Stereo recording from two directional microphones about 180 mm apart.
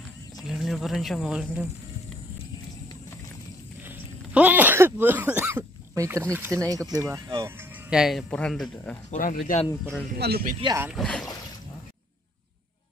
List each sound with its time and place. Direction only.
0.4 s speech: centre (ahead or behind)
3.8 s speech: 10° right (ahead or behind)
9.1 s speech: 45° left (ahead or behind)
10.1 s speech: 60° right (ahead or behind)
11.0 s speech: 5° left (ahead or behind)